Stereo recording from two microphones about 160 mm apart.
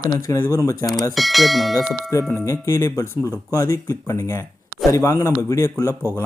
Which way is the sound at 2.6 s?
20° left (ahead or behind).